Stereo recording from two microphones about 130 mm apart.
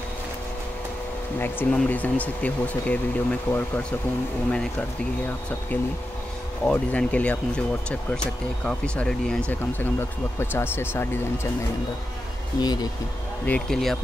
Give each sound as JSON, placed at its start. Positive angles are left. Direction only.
{"t": 1.4, "sound": "speech", "side_deg": 15}
{"t": 6.6, "sound": "speech", "side_deg": 10}
{"t": 12.5, "sound": "speech", "side_deg": 30}
{"t": 13.5, "sound": "speech", "side_deg": 5}